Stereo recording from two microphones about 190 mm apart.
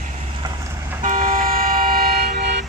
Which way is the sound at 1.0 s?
45° right (ahead or behind).